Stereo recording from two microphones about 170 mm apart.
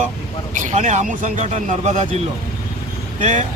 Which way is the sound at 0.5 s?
45° right (ahead or behind).